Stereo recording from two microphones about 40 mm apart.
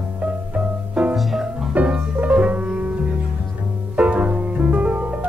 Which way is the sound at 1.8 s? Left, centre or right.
Right.